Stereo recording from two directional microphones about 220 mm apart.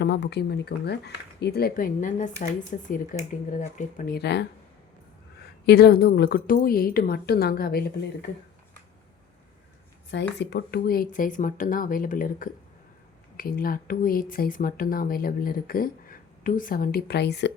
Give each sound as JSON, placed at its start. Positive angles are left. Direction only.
{"t": 0.0, "sound": "speech", "side_deg": 50}
{"t": 5.6, "sound": "speech", "side_deg": 45}
{"t": 10.3, "sound": "speech", "side_deg": 50}